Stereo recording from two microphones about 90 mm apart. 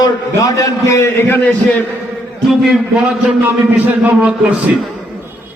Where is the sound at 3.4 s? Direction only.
20° right (ahead or behind).